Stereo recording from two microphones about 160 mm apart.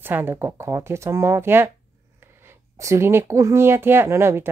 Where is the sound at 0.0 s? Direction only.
15° right (ahead or behind).